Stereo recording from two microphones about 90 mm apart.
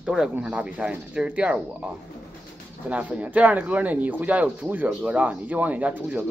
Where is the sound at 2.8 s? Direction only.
15° right (ahead or behind).